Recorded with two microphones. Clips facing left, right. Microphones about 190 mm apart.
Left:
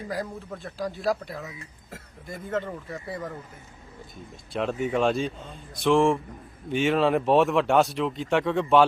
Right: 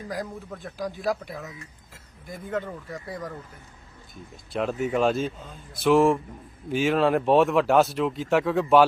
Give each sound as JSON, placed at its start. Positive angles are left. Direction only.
{"t": 0.1, "sound": "speech", "side_deg": 0}
{"t": 0.8, "sound": "speech", "side_deg": -15}
{"t": 1.0, "sound": "speech", "side_deg": 0}